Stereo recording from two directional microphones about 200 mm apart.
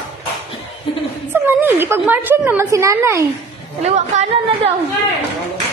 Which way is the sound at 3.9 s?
35° right (ahead or behind).